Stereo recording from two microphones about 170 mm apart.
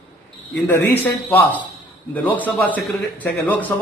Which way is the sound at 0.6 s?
10° left (ahead or behind).